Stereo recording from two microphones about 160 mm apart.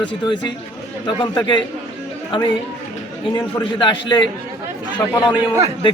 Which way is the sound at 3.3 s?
30° left (ahead or behind).